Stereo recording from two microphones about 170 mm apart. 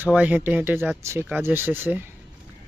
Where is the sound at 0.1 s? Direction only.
10° right (ahead or behind).